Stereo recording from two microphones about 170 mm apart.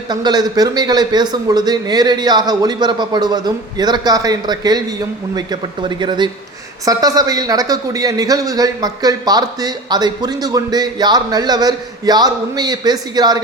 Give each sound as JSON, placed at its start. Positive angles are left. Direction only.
{"t": 0.1, "sound": "a man's voice", "side_deg": -25}